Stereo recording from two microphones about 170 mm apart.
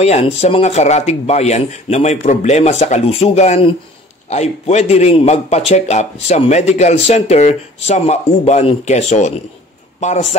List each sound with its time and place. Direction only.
0.0 s speech: 40° left (ahead or behind)